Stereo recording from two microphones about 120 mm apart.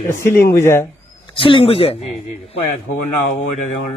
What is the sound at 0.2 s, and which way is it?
Speech, 20° left (ahead or behind).